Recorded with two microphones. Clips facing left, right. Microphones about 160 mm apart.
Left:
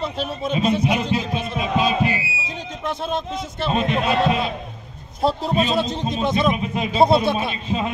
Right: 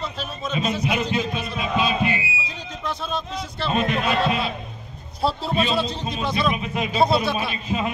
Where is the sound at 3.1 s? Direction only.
25° left (ahead or behind).